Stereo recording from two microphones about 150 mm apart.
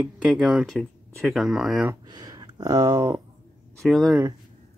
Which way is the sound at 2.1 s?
30° right (ahead or behind).